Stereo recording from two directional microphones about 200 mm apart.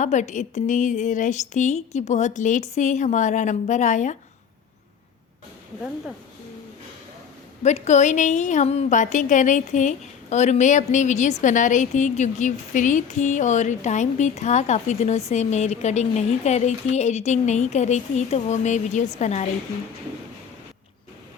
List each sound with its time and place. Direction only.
0.0 s a woman's voice: 35° left (ahead or behind)
7.6 s a woman's voice: 35° left (ahead or behind)